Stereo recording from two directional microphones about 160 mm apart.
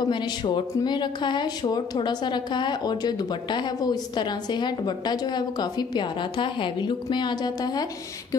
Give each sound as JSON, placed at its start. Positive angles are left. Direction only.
{"t": 0.1, "sound": "speech", "side_deg": 30}